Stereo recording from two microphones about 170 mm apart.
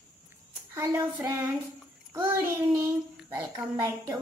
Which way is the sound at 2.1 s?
20° right (ahead or behind).